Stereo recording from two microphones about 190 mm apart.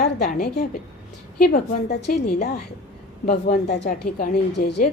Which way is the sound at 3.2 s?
50° left (ahead or behind).